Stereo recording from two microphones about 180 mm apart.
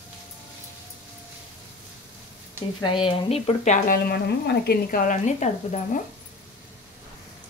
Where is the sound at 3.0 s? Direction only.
35° left (ahead or behind).